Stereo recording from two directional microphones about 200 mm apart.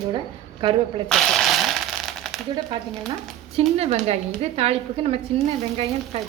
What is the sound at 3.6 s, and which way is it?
A woman's voice, 30° right (ahead or behind).